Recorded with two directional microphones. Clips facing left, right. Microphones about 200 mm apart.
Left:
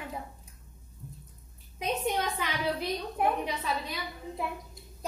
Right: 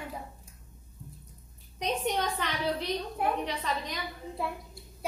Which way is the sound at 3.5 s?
5° left (ahead or behind).